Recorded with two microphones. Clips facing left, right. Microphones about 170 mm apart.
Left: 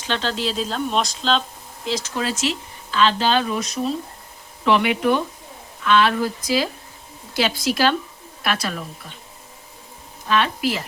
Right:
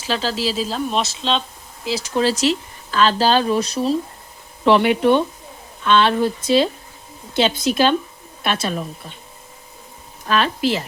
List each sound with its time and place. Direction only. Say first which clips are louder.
0.0 s speech: right 2 dB; 5° right (ahead or behind)
2.1 s speech: right 10 dB; 35° right (ahead or behind)
10.2 s speech: right 1 dB; 40° right (ahead or behind)
10.6 s speech: right 3 dB; 25° right (ahead or behind)